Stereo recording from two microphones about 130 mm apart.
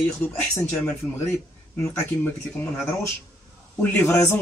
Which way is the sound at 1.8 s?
20° left (ahead or behind).